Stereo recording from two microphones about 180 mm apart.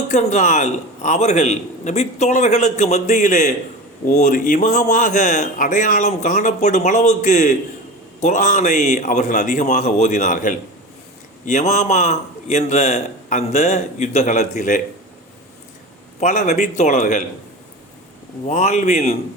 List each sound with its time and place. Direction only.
0.1 s a man's voice: 40° left (ahead or behind)
16.2 s a man's voice: 40° left (ahead or behind)
18.4 s a man's voice: 40° left (ahead or behind)